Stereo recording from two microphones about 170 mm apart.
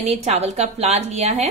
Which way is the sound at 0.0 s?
40° right (ahead or behind).